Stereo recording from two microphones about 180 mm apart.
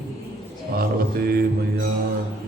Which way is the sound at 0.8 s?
55° right (ahead or behind).